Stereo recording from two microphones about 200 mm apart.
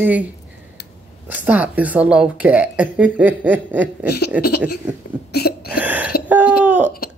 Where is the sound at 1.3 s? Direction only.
10° right (ahead or behind).